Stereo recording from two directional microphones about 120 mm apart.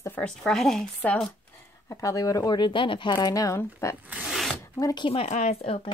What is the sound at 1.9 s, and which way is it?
Speech, 30° left (ahead or behind).